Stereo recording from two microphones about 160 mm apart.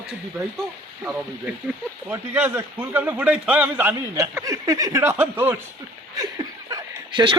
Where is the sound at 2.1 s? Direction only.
10° right (ahead or behind).